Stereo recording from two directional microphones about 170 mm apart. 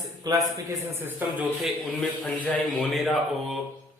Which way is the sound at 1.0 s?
10° right (ahead or behind).